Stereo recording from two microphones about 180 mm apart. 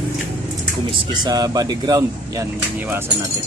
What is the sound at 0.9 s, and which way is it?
Speech, 25° right (ahead or behind).